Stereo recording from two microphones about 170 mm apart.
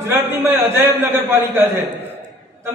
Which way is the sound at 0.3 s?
15° right (ahead or behind).